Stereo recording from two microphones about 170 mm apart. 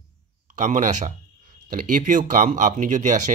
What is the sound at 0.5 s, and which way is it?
Speech, 45° right (ahead or behind).